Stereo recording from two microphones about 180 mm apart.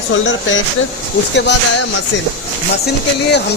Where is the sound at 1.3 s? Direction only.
75° left (ahead or behind).